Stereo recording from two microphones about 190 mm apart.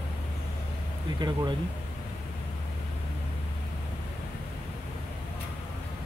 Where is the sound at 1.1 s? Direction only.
20° right (ahead or behind).